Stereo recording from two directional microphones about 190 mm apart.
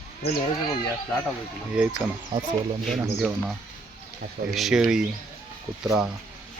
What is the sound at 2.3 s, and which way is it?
Speech, 20° right (ahead or behind).